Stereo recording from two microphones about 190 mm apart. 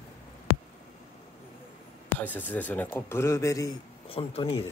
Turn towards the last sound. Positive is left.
turn(degrees=30)  # may be behind; listen again after turning